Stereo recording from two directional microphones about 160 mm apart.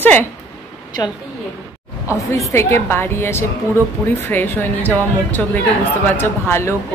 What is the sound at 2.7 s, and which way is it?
Speech, 15° left (ahead or behind).